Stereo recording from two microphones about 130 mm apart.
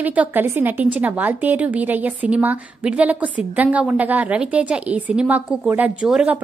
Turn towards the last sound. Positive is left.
turn(degrees=-10)  # may be behind; listen again after turning